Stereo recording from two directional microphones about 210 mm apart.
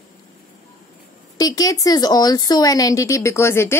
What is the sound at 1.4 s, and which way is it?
Speech, 15° left (ahead or behind).